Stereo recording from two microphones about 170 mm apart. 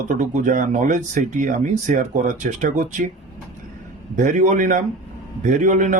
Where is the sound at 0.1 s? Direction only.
50° right (ahead or behind).